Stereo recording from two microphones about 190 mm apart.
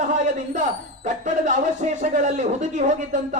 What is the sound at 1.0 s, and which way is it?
Speech, 40° right (ahead or behind).